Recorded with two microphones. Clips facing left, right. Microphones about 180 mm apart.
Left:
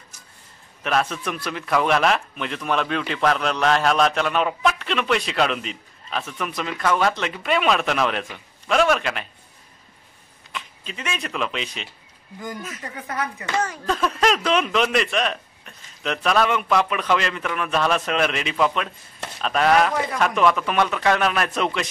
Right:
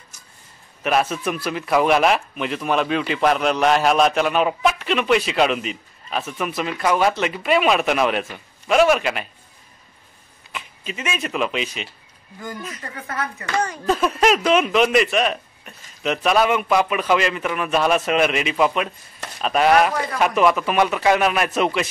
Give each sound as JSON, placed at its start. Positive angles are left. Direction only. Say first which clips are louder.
{"t": 0.8, "sound": "speech", "louder": "right 3 dB", "side_deg": -5}
{"t": 10.5, "sound": "speech", "louder": "right 3 dB", "side_deg": -5}
{"t": 12.8, "sound": "speech", "louder": "left 1 dB", "side_deg": 15}
{"t": 13.8, "sound": "speech", "louder": "right 4 dB", "side_deg": -10}